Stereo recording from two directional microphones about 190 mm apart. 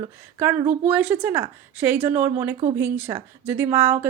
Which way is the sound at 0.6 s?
35° right (ahead or behind).